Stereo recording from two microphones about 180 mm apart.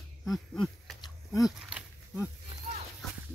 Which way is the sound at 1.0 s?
20° left (ahead or behind).